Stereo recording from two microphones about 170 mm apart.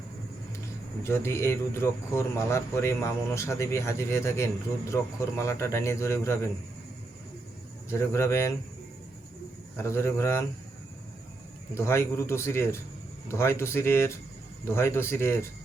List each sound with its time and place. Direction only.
1.0 s a man's voice: 15° left (ahead or behind)
7.9 s a man's voice: 15° left (ahead or behind)
9.7 s a man's voice: 15° left (ahead or behind)
11.7 s a man's voice: 15° left (ahead or behind)